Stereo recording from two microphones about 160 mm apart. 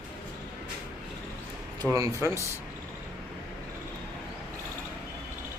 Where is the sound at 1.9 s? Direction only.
15° right (ahead or behind).